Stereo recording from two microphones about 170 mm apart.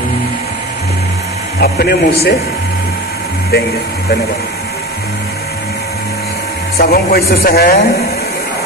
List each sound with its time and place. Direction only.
1.6 s speech: 70° left (ahead or behind)
6.8 s a man's voice: 65° left (ahead or behind)